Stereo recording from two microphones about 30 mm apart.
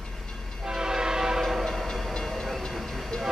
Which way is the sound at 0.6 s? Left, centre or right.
Right.